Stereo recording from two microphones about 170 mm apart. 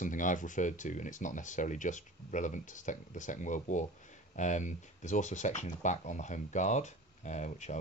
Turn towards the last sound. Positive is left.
turn(degrees=45)  # may be behind; listen again after turning